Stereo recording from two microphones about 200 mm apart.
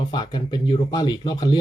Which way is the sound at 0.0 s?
20° left (ahead or behind).